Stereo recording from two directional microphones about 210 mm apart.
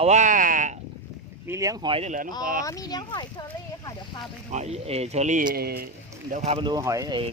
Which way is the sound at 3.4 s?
15° left (ahead or behind).